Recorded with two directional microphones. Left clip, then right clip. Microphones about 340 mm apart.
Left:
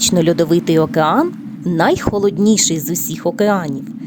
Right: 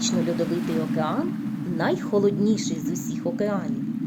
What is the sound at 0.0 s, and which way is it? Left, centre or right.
A woman's voice, left.